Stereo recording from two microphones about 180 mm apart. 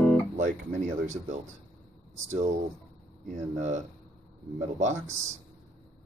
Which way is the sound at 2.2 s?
40° right (ahead or behind).